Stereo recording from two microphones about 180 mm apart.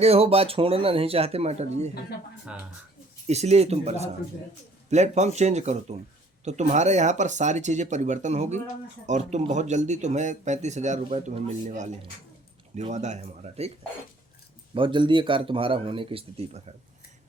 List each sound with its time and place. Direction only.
0.0 s speech: 35° right (ahead or behind)
2.5 s speech: 5° right (ahead or behind)
3.2 s speech: 35° right (ahead or behind)
14.8 s speech: 25° right (ahead or behind)